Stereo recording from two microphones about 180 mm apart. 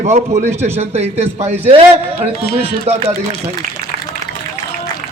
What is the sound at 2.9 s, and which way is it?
Speech, 35° right (ahead or behind).